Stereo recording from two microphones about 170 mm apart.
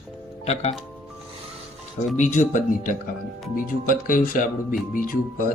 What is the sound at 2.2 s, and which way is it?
Speech, 50° left (ahead or behind).